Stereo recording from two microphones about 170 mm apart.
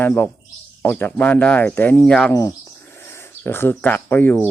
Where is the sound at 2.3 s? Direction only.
15° left (ahead or behind).